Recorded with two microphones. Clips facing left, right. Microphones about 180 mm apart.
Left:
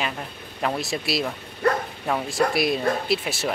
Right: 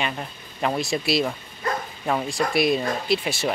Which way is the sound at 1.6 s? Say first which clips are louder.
Left 6 dB; 65° left (ahead or behind).